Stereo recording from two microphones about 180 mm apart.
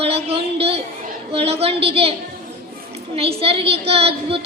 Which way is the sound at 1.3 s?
35° right (ahead or behind).